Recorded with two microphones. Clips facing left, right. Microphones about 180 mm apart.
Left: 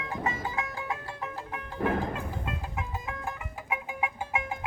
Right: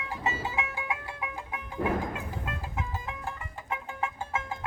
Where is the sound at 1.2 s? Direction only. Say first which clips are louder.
Left 1 dB; 5° right (ahead or behind).